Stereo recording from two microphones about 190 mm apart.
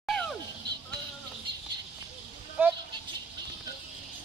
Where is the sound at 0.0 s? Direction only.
Centre (ahead or behind).